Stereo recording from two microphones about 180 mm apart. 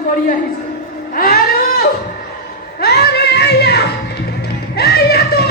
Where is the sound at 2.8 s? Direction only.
65° left (ahead or behind).